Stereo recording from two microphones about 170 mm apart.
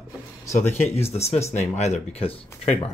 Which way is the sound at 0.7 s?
40° left (ahead or behind).